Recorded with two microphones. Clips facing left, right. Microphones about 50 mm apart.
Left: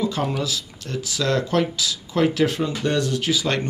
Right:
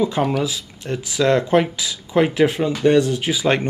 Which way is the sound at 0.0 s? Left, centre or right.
Centre.